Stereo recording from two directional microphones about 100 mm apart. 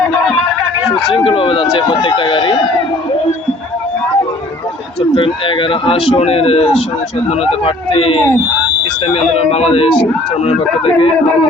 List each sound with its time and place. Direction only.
1.1 s speech: 60° left (ahead or behind)
5.1 s speech: 60° left (ahead or behind)
8.8 s speech: 80° left